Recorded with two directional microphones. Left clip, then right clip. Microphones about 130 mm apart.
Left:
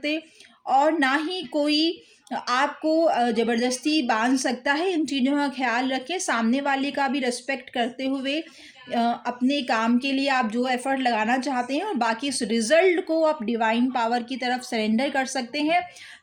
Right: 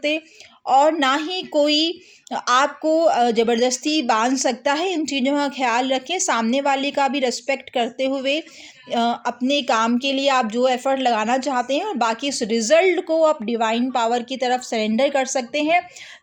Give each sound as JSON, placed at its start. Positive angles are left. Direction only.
{"t": 0.6, "sound": "speech", "side_deg": -45}